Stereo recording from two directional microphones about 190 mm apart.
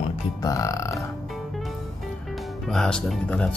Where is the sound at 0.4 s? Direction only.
15° left (ahead or behind).